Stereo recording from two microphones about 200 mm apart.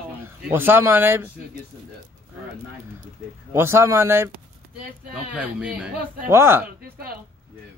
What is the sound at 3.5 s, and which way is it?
Speech, 15° right (ahead or behind).